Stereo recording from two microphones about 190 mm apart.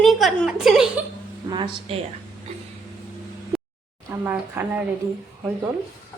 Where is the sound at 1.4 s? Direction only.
25° right (ahead or behind).